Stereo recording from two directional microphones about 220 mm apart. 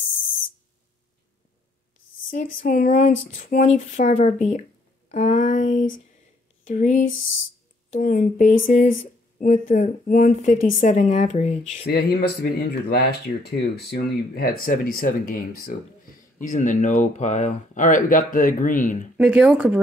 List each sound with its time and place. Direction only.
2.2 s speech: 40° left (ahead or behind)
11.8 s speech: 45° left (ahead or behind)
19.1 s speech: 5° right (ahead or behind)